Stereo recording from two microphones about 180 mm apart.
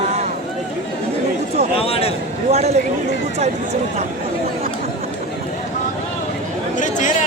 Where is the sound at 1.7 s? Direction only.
35° left (ahead or behind).